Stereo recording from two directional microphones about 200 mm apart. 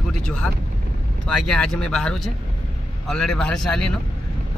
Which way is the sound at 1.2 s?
5° left (ahead or behind).